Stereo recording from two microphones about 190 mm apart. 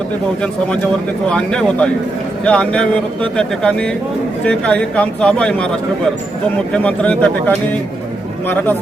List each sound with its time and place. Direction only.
1.3 s speech: 5° left (ahead or behind)
6.8 s speech: 10° left (ahead or behind)